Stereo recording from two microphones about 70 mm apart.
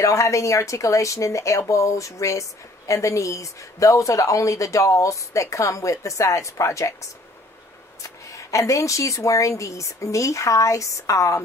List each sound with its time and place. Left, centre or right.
0.0 s a woman's voice: left